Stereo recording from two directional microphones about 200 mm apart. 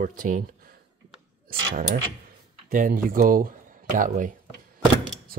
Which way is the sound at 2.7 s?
45° right (ahead or behind).